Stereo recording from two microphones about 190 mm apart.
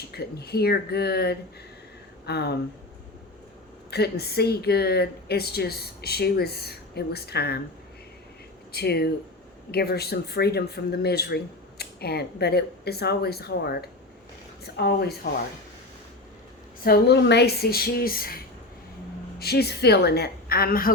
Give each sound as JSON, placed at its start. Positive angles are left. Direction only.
{"t": 0.1, "sound": "speech", "side_deg": 55}
{"t": 3.9, "sound": "speech", "side_deg": 60}
{"t": 8.7, "sound": "speech", "side_deg": 55}
{"t": 16.8, "sound": "speech", "side_deg": 60}
{"t": 19.4, "sound": "speech", "side_deg": 55}